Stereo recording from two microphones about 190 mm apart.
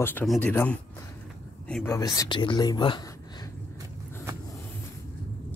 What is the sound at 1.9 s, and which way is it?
Speech, 15° left (ahead or behind).